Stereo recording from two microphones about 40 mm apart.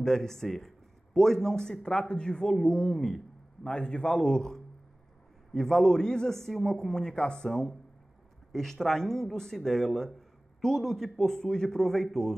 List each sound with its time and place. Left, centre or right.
0.0 s a man's voice: centre
3.6 s a man's voice: left
5.6 s a man's voice: centre